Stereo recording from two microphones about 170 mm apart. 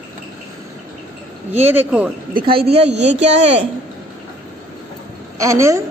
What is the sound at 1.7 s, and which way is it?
Speech, 10° right (ahead or behind).